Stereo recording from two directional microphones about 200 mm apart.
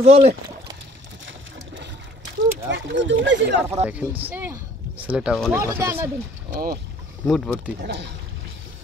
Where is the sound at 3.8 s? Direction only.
35° right (ahead or behind).